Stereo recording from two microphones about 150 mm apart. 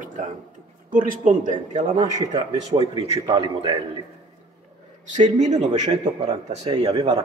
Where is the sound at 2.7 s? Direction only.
40° right (ahead or behind).